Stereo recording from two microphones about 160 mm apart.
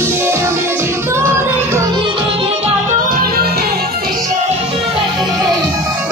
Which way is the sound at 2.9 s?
65° right (ahead or behind).